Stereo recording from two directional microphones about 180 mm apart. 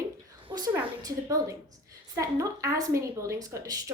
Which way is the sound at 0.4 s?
20° right (ahead or behind).